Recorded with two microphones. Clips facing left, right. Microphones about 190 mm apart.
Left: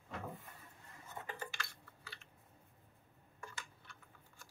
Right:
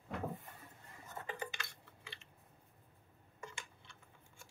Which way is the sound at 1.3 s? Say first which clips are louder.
Right 3 dB; 20° right (ahead or behind).